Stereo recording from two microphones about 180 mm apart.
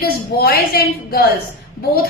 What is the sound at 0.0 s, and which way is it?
A woman's voice, 60° left (ahead or behind).